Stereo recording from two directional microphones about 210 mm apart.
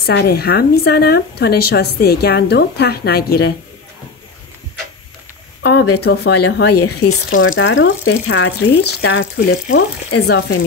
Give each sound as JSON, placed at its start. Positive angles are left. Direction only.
{"t": 0.0, "sound": "a woman's voice", "side_deg": 50}
{"t": 5.6, "sound": "a sound", "side_deg": 55}
{"t": 5.9, "sound": "a woman's voice", "side_deg": 50}
{"t": 7.0, "sound": "speech", "side_deg": 65}
{"t": 9.0, "sound": "speech", "side_deg": 60}